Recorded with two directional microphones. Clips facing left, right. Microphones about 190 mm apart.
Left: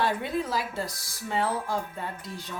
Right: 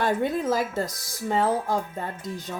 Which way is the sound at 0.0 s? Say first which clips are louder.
Right 4 dB; 45° right (ahead or behind).